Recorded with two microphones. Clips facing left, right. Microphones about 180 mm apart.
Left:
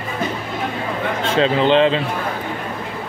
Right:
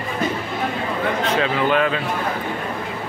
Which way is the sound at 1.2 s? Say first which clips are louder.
Left 6 dB; 25° left (ahead or behind).